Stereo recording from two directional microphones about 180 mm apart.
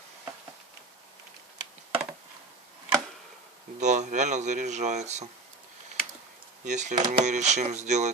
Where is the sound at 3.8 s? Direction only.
40° right (ahead or behind).